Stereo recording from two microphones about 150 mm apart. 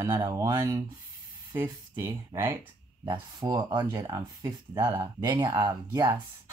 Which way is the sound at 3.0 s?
30° right (ahead or behind).